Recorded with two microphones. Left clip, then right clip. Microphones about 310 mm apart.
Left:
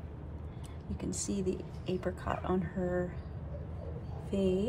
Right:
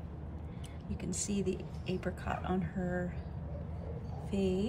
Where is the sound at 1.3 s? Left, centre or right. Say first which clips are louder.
Left 1 dB; centre.